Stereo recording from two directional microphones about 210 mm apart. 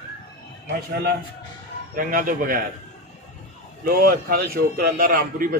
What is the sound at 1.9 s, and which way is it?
Speech, 40° right (ahead or behind).